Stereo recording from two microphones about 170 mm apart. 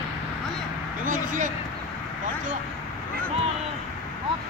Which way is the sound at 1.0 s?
50° right (ahead or behind).